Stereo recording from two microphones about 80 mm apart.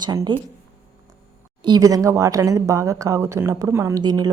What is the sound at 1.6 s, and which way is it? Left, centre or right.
Speech, right.